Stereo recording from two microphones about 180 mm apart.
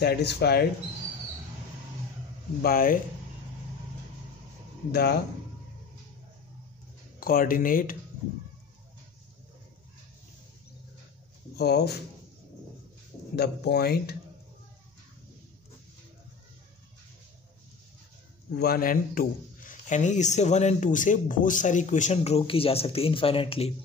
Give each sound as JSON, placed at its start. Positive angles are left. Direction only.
{"t": 0.0, "sound": "speech", "side_deg": 65}
{"t": 2.6, "sound": "speech", "side_deg": 55}
{"t": 4.9, "sound": "speech", "side_deg": 60}
{"t": 7.2, "sound": "speech", "side_deg": 55}
{"t": 11.5, "sound": "speech", "side_deg": 65}
{"t": 13.4, "sound": "speech", "side_deg": 60}
{"t": 18.5, "sound": "a man's voice", "side_deg": 60}